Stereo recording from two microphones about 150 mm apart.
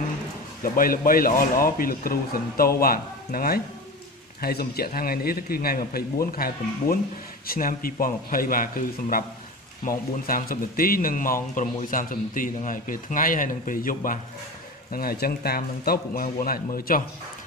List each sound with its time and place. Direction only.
0.7 s speech: 70° left (ahead or behind)
4.4 s a man's voice: 90° left; by 14.2 s 65° left (ahead or behind)
14.9 s speech: 80° left